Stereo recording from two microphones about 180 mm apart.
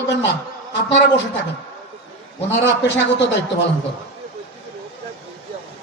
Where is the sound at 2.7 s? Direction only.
75° left (ahead or behind).